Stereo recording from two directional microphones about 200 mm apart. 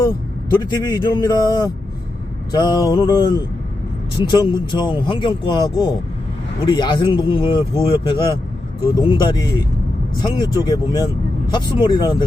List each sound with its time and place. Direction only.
0.6 s speech: 20° left (ahead or behind)